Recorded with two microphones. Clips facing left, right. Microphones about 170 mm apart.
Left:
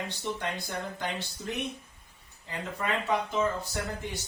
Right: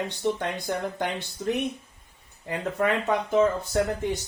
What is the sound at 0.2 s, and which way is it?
Speech, 55° right (ahead or behind).